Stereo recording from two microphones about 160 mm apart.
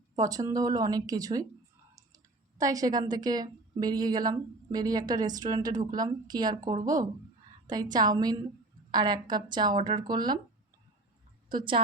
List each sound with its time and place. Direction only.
0.2 s speech: 25° right (ahead or behind)
11.4 s a woman's voice: 30° right (ahead or behind)